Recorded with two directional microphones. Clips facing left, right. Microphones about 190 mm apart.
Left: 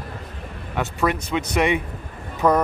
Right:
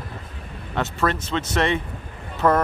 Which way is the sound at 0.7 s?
15° left (ahead or behind).